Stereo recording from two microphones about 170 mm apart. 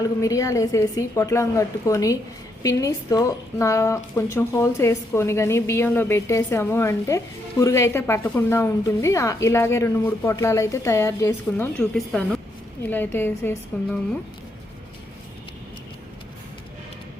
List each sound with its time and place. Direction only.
0.0 s a woman's voice: 20° left (ahead or behind)
11.9 s a woman's voice: centre (ahead or behind)